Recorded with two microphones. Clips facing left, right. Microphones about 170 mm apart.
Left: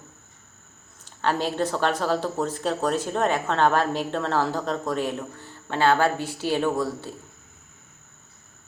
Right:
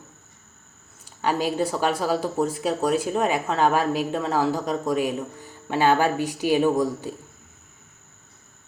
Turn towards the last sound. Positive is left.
turn(degrees=-15)  # may be behind; listen again after turning